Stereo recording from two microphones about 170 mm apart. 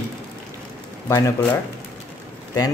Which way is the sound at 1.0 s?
20° left (ahead or behind).